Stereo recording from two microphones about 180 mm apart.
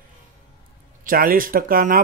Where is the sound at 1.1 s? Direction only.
50° right (ahead or behind).